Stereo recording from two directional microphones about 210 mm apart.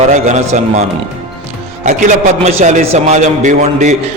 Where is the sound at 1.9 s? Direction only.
35° right (ahead or behind).